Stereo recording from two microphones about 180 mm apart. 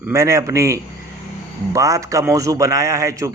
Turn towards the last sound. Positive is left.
turn(degrees=-15)  # may be behind; listen again after turning